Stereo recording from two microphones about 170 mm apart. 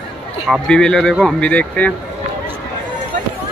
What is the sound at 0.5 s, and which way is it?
Speech, 5° left (ahead or behind).